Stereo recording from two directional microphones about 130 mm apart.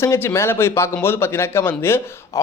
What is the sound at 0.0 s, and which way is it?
A man's voice, 20° left (ahead or behind).